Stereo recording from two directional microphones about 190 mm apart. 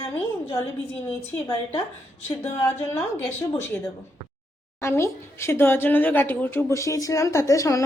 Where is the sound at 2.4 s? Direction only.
15° left (ahead or behind).